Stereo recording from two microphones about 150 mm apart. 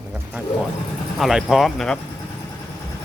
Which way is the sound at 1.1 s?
Centre (ahead or behind).